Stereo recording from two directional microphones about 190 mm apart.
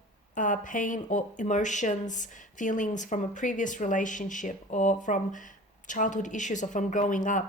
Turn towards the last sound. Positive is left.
turn(degrees=40)  # may be behind; listen again after turning